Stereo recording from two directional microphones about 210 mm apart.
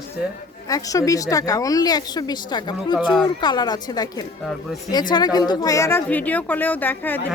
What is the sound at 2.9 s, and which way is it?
Speech, centre (ahead or behind).